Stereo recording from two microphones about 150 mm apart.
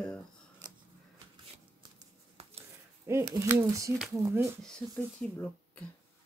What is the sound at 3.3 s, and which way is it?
Speech, 20° right (ahead or behind).